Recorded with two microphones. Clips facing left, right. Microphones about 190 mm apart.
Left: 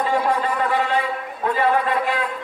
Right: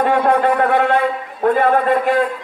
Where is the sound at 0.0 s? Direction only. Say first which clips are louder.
Right 6 dB; 60° right (ahead or behind).